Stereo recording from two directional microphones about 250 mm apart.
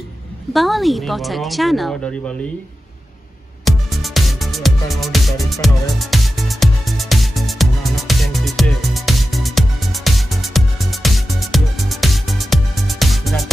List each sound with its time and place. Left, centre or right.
0.5 s speech: centre
3.6 s music: centre